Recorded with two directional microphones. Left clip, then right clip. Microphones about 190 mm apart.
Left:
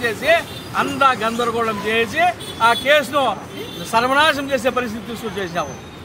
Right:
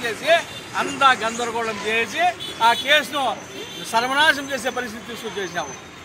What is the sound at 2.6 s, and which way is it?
Speech, centre (ahead or behind).